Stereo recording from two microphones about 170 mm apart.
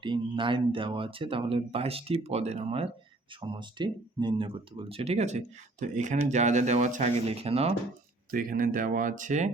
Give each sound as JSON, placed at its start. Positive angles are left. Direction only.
{"t": 0.0, "sound": "speech", "side_deg": -30}
{"t": 8.3, "sound": "speech", "side_deg": -55}